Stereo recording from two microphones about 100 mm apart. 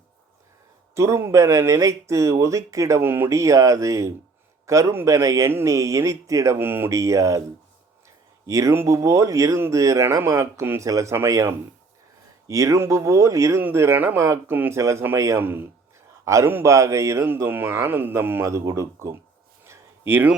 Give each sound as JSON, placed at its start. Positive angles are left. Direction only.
{"t": 0.9, "sound": "speech", "side_deg": -30}
{"t": 8.4, "sound": "speech", "side_deg": -30}
{"t": 19.6, "sound": "a sound", "side_deg": -25}